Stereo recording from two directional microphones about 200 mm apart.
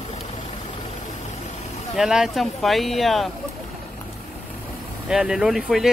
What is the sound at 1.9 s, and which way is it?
Speech, centre (ahead or behind).